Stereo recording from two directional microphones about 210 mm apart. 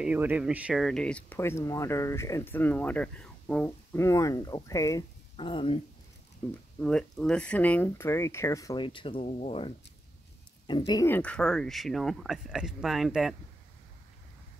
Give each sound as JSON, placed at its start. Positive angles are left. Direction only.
{"t": 0.0, "sound": "speech", "side_deg": -5}
{"t": 5.3, "sound": "speech", "side_deg": 25}
{"t": 6.8, "sound": "speech", "side_deg": 5}
{"t": 10.9, "sound": "speech", "side_deg": 15}